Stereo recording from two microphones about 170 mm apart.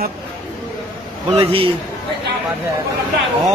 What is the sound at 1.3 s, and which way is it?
Speech, 35° right (ahead or behind).